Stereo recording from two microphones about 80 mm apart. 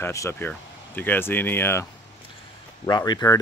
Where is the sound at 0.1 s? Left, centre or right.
Left.